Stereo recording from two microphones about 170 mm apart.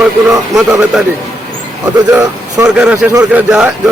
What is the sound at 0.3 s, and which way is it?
Speech, 5° right (ahead or behind).